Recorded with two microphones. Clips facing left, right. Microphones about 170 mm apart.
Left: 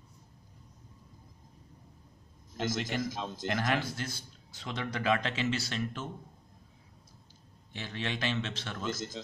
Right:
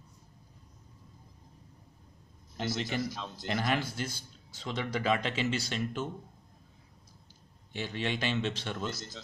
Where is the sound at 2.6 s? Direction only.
45° left (ahead or behind).